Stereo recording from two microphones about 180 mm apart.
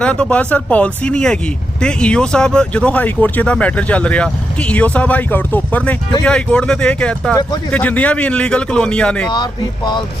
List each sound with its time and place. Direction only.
0.0 s a man's voice: 5° left (ahead or behind)
9.3 s speech: 25° left (ahead or behind)